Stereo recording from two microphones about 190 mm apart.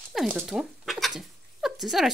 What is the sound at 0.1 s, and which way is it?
Speech, centre (ahead or behind).